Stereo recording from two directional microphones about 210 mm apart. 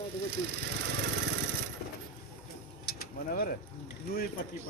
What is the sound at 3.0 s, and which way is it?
Mechanisms, 45° left (ahead or behind).